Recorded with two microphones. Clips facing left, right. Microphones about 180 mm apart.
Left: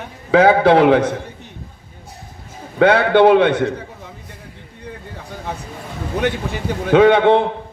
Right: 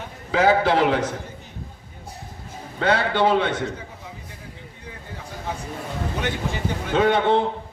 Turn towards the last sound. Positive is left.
turn(degrees=65)  # may be behind; listen again after turning